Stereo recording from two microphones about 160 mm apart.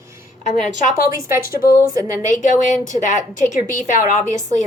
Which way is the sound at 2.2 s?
50° left (ahead or behind).